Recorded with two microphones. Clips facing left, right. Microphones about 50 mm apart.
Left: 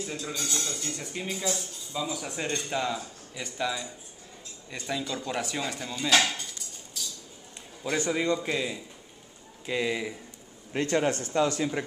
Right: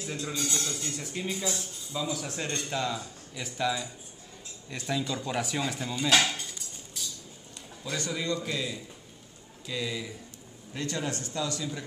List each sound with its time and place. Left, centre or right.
0.0 s speech: centre
7.8 s a man's voice: left